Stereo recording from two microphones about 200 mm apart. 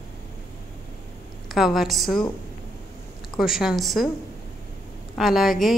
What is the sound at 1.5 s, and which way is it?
Speech, centre (ahead or behind).